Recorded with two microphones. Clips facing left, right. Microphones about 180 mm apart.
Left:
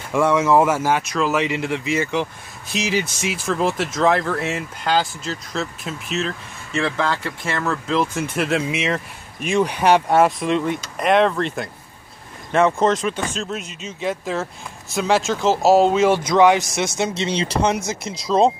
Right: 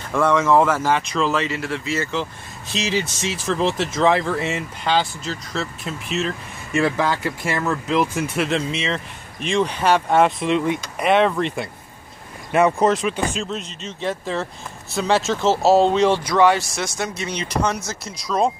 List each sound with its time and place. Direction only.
0.1 s speech: 10° left (ahead or behind)
1.3 s speech: 15° left (ahead or behind); by 11.4 s 5° right (ahead or behind)
12.5 s speech: 10° right (ahead or behind)
13.5 s speech: 5° left (ahead or behind)
15.6 s speech: 10° left (ahead or behind)
16.3 s speech: 15° left (ahead or behind)